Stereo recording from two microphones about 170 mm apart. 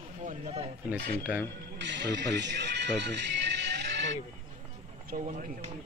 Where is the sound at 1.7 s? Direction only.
90° right.